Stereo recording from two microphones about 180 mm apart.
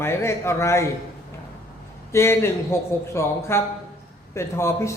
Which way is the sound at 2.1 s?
15° left (ahead or behind).